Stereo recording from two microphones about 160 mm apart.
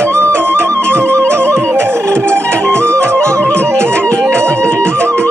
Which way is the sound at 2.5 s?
5° left (ahead or behind).